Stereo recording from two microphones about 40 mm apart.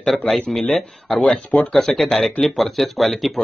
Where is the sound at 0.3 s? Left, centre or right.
Centre.